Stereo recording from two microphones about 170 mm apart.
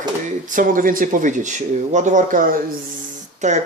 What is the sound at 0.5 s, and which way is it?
Speech, 55° right (ahead or behind).